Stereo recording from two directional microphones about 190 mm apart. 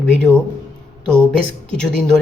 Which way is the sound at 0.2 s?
5° left (ahead or behind).